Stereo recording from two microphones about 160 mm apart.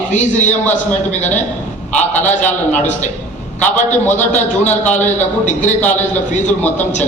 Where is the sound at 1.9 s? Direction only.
45° left (ahead or behind).